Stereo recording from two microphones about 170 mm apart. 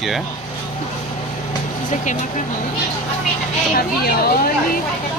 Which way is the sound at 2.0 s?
45° left (ahead or behind).